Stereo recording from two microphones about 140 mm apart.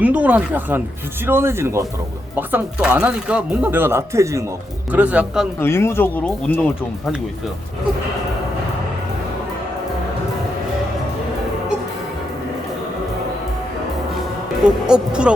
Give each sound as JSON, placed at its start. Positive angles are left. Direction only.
{"t": 0.0, "sound": "speech", "side_deg": -10}
{"t": 4.9, "sound": "speech", "side_deg": -10}
{"t": 5.5, "sound": "speech", "side_deg": 15}
{"t": 14.6, "sound": "speech", "side_deg": -5}